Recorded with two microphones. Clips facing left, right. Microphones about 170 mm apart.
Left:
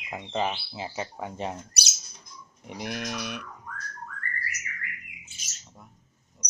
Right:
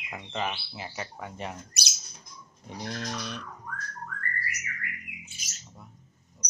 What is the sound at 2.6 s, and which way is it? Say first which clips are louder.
Speech: left 2 dB; 15° left (ahead or behind).